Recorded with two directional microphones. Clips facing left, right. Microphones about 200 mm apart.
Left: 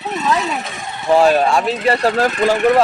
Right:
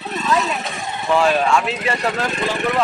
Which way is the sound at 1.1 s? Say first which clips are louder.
Left 4 dB; 40° left (ahead or behind).